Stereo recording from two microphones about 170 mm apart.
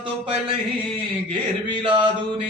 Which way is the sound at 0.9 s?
30° right (ahead or behind).